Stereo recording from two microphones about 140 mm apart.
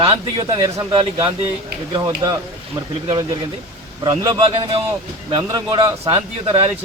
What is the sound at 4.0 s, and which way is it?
Speech, 30° right (ahead or behind).